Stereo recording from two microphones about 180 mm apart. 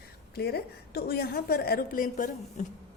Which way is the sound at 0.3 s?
60° left (ahead or behind).